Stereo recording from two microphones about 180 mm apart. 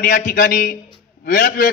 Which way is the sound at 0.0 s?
50° left (ahead or behind).